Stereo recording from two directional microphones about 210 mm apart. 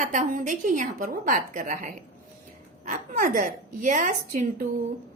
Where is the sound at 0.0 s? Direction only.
35° right (ahead or behind).